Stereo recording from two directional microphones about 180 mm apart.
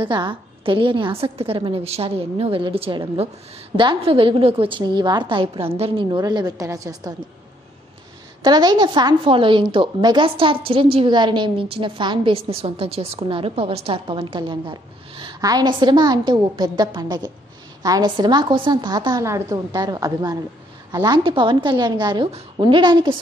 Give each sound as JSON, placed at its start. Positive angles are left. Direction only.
{"t": 0.0, "sound": "a woman's voice", "side_deg": -25}
{"t": 8.4, "sound": "a woman's voice", "side_deg": -25}